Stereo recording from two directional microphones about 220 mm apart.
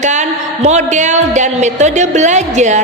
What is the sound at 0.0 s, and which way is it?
A woman's voice, 30° right (ahead or behind).